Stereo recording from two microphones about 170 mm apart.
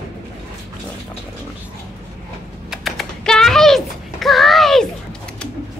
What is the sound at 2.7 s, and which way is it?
Typing, centre (ahead or behind).